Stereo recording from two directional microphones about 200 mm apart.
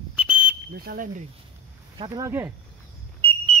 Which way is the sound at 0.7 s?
50° right (ahead or behind).